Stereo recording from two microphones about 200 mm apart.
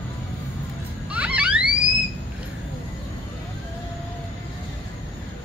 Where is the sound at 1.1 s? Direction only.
5° right (ahead or behind).